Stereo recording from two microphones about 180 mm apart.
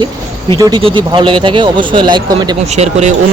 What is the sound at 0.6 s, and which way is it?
Speech, 25° right (ahead or behind).